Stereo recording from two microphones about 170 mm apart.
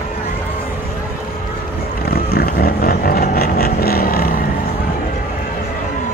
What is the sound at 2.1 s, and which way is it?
Vehicle, 65° left (ahead or behind).